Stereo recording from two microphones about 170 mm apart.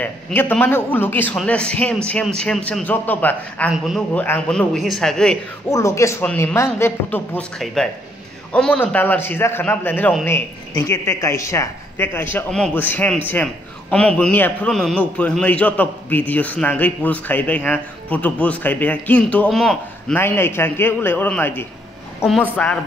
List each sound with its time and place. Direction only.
0.0 s a woman's voice: 10° left (ahead or behind)
5.7 s a woman's voice: 15° left (ahead or behind)
20.2 s a woman's voice: 15° left (ahead or behind)
22.2 s a man's voice: centre (ahead or behind)